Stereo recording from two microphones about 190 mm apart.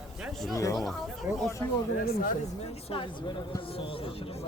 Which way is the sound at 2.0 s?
50° left (ahead or behind).